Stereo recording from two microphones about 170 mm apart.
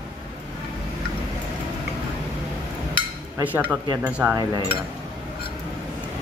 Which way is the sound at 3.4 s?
10° right (ahead or behind).